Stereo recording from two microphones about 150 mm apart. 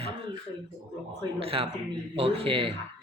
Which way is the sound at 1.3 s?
40° right (ahead or behind).